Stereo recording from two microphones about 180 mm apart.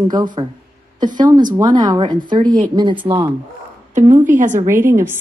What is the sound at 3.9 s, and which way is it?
Speech, 45° right (ahead or behind).